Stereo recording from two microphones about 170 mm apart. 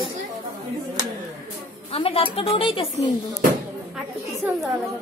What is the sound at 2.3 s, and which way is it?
Speech, 30° left (ahead or behind).